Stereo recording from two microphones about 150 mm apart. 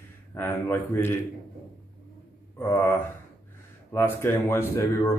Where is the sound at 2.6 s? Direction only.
15° left (ahead or behind).